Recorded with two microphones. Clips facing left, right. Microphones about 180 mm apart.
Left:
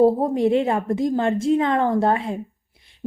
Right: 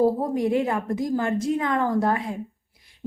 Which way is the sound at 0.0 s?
25° left (ahead or behind).